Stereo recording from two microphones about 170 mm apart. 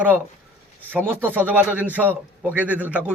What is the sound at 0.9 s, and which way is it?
A man's voice, 10° right (ahead or behind).